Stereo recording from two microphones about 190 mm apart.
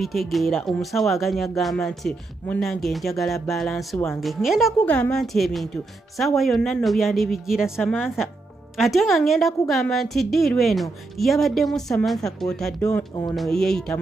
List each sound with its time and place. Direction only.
0.0 s a woman's voice: centre (ahead or behind)
12.8 s speech: 20° left (ahead or behind)
13.4 s a woman's voice: centre (ahead or behind)